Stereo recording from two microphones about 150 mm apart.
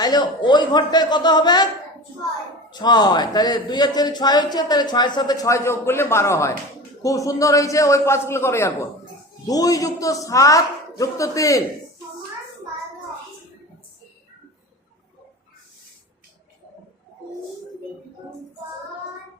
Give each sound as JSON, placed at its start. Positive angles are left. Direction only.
{"t": 0.0, "sound": "speech", "side_deg": 30}
{"t": 2.6, "sound": "speech", "side_deg": 30}